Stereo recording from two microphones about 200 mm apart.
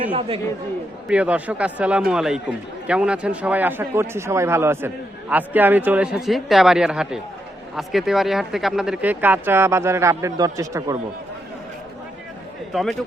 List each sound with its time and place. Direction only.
0.1 s speech: 25° right (ahead or behind)
1.0 s speech: 5° right (ahead or behind)
12.7 s speech: centre (ahead or behind)